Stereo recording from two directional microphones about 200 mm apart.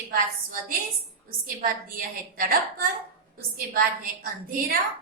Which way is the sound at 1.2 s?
45° right (ahead or behind).